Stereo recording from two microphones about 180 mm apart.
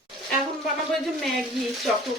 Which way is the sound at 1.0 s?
Centre (ahead or behind).